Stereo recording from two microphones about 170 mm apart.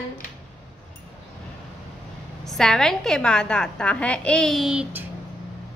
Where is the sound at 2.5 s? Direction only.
5° left (ahead or behind).